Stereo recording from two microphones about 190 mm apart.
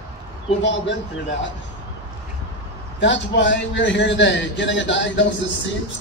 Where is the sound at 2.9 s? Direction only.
70° left (ahead or behind).